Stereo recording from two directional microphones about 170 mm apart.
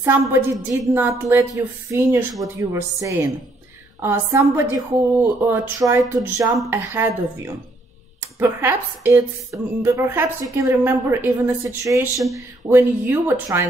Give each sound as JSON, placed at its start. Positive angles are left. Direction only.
{"t": 0.0, "sound": "speech", "side_deg": -15}